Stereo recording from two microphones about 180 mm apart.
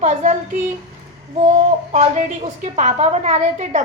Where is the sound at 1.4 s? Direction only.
35° right (ahead or behind).